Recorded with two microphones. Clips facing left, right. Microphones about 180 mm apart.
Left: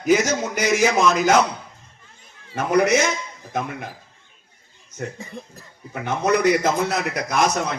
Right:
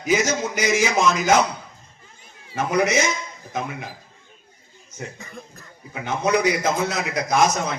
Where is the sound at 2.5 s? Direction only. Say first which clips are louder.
Left 3 dB; 60° left (ahead or behind).